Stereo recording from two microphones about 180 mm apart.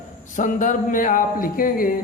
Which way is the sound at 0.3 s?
45° left (ahead or behind).